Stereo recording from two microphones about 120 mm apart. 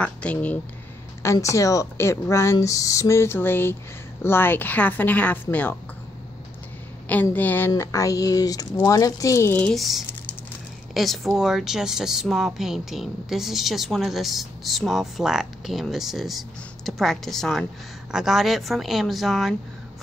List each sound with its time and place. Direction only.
0.0 s a woman's voice: 10° left (ahead or behind)
1.2 s a woman's voice: 25° left (ahead or behind)
7.3 s a woman's voice: 15° left (ahead or behind)
9.6 s speech: 5° left (ahead or behind)